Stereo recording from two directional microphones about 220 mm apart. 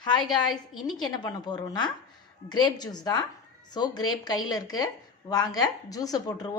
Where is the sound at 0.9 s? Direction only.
20° left (ahead or behind).